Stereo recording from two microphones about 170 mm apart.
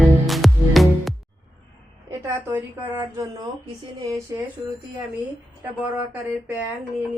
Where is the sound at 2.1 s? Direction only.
15° right (ahead or behind).